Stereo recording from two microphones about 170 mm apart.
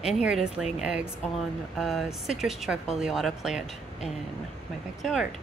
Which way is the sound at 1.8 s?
Centre (ahead or behind).